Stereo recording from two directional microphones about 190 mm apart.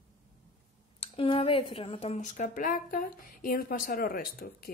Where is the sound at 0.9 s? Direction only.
30° left (ahead or behind).